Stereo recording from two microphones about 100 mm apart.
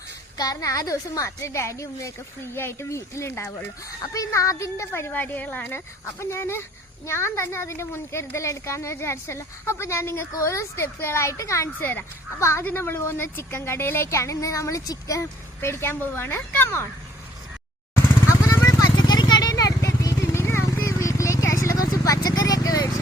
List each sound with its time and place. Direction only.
0.3 s a woman's voice: 35° left (ahead or behind)
4.0 s a woman's voice: 35° left (ahead or behind)
17.9 s vehicle: 25° left (ahead or behind)
18.9 s vehicle: 45° left (ahead or behind)